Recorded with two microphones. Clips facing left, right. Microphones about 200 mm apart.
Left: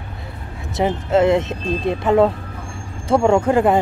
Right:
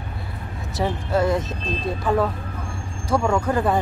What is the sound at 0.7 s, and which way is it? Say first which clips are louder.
Speech: left 5 dB; 25° left (ahead or behind).